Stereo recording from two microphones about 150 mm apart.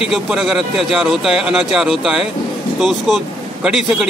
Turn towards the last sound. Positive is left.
turn(degrees=-5)  # may be behind; listen again after turning